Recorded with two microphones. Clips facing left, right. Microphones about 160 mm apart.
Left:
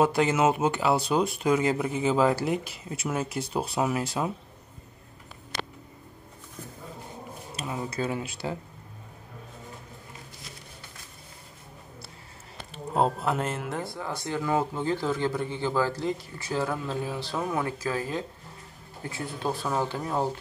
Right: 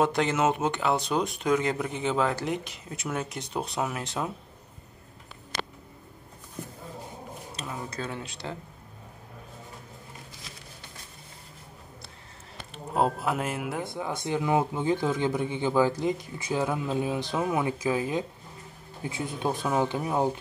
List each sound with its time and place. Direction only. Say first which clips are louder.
0.0 s speech: left 2 dB; 5° left (ahead or behind)
7.5 s speech: left 5 dB; 5° left (ahead or behind)
12.9 s speech: left 1 dB; 5° right (ahead or behind)
13.8 s speech: right 2 dB; 20° right (ahead or behind)